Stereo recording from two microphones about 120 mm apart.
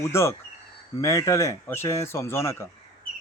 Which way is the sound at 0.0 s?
25° left (ahead or behind).